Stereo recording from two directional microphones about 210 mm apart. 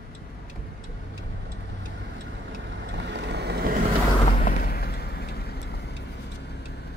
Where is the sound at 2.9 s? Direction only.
55° right (ahead or behind).